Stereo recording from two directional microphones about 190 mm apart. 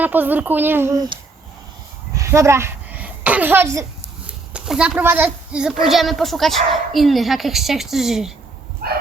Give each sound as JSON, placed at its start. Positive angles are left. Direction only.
{"t": 0.0, "sound": "speech", "side_deg": -10}
{"t": 2.1, "sound": "a sound", "side_deg": -15}
{"t": 4.3, "sound": "a woman's voice", "side_deg": -5}
{"t": 8.8, "sound": "bow-wow", "side_deg": -55}